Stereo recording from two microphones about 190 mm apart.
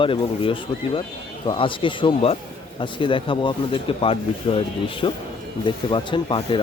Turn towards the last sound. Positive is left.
turn(degrees=25)  # may be behind; listen again after turning